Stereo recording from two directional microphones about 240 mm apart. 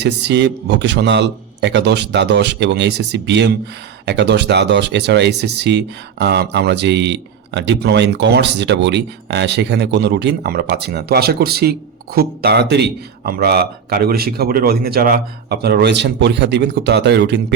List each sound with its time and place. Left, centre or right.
0.0 s speech: right